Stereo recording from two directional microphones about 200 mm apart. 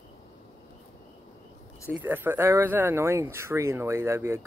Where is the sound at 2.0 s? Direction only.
10° right (ahead or behind).